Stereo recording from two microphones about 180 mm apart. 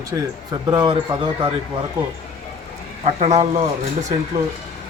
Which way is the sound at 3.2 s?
40° right (ahead or behind).